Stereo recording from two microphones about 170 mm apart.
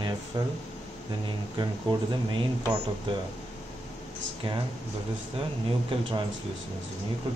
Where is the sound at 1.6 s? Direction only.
30° right (ahead or behind).